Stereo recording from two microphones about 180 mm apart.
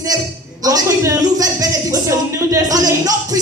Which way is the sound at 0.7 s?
20° right (ahead or behind).